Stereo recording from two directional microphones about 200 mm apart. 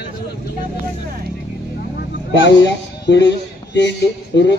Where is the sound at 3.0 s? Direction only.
60° left (ahead or behind).